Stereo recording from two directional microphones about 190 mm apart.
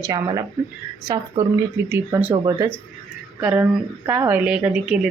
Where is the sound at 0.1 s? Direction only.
20° right (ahead or behind).